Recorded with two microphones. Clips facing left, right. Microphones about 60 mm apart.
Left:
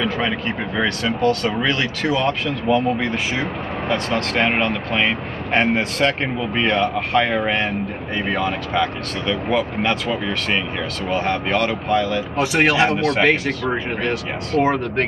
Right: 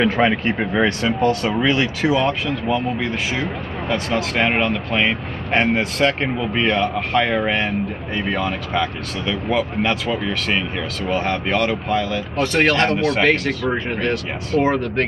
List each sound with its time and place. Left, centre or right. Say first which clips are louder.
0.0 s speech: right 5 dB; right; by 15.0 s centre